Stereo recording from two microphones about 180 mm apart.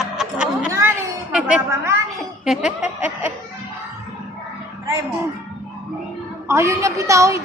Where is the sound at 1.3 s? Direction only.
5° right (ahead or behind).